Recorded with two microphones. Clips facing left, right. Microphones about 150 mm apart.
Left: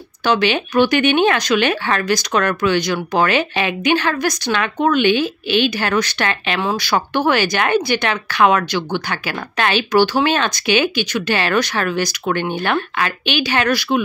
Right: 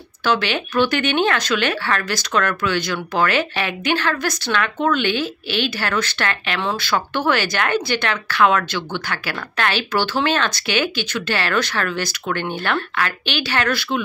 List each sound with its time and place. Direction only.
0.2 s speech: 15° left (ahead or behind)